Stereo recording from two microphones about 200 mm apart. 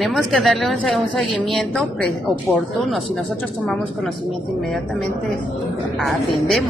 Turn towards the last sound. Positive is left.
turn(degrees=0)  # may be behind; listen again after turning